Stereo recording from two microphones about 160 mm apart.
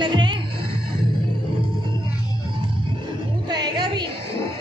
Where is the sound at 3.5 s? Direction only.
25° right (ahead or behind).